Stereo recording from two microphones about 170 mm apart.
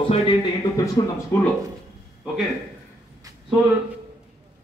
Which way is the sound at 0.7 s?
20° left (ahead or behind).